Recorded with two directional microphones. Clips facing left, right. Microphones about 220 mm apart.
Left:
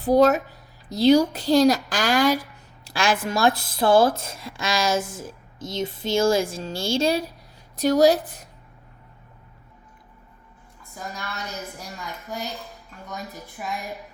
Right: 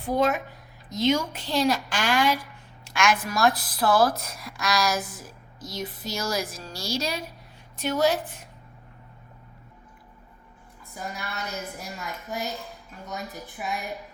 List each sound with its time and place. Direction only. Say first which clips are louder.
0.0 s a woman's voice: left 7 dB; 40° left (ahead or behind)
7.8 s a woman's voice: left 7 dB; 40° left (ahead or behind)
12.0 s a woman's voice: even; centre (ahead or behind)